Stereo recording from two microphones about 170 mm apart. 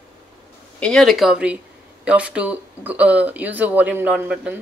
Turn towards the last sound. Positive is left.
turn(degrees=-5)  # may be behind; listen again after turning